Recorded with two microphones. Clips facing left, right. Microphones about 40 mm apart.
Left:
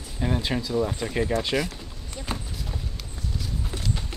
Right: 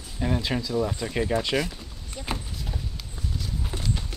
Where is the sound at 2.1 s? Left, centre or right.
Centre.